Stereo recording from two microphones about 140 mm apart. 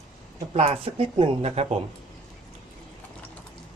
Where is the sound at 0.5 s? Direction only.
45° right (ahead or behind).